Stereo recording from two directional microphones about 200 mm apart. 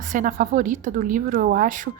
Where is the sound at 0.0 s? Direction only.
40° right (ahead or behind).